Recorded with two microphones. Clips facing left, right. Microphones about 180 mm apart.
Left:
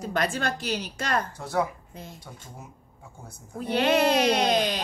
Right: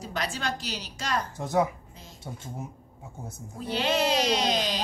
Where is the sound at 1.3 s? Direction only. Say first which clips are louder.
Right 2 dB; 20° right (ahead or behind).